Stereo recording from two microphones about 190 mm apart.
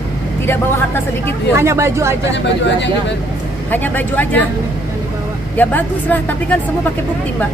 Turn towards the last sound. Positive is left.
turn(degrees=10)  # may be behind; listen again after turning